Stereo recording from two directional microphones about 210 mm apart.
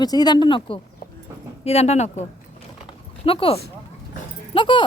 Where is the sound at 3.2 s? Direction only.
25° left (ahead or behind).